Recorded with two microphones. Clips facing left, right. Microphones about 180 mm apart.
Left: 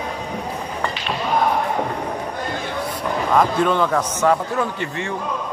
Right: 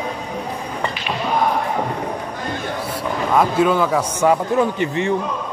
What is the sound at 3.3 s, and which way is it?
A man's voice, 5° right (ahead or behind).